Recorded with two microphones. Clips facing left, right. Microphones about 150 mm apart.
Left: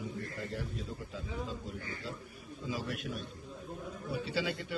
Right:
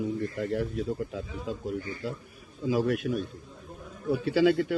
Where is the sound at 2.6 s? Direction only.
75° right (ahead or behind).